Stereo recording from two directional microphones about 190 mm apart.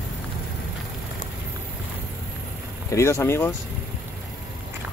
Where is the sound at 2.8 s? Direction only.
15° left (ahead or behind).